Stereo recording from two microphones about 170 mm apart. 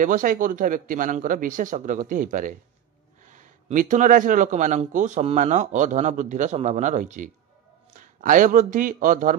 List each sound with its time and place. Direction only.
0.0 s speech: 50° right (ahead or behind)